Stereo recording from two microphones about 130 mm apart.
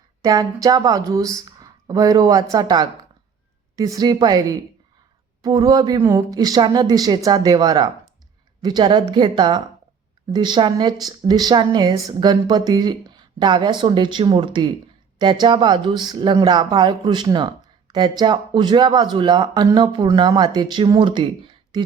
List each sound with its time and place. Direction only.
0.2 s speech: 25° right (ahead or behind)